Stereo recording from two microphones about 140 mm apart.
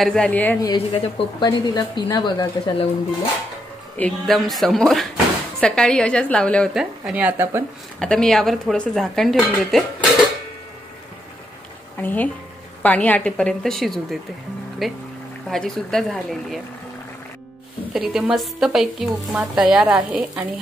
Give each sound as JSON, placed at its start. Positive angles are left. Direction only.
{"t": 0.0, "sound": "a woman's voice", "side_deg": 5}
{"t": 0.6, "sound": "speech", "side_deg": 35}
{"t": 4.0, "sound": "a woman's voice", "side_deg": 0}
{"t": 6.8, "sound": "speech", "side_deg": -10}
{"t": 8.0, "sound": "a woman's voice", "side_deg": 5}
{"t": 12.0, "sound": "a woman's voice", "side_deg": 10}
{"t": 17.9, "sound": "a woman's voice", "side_deg": -5}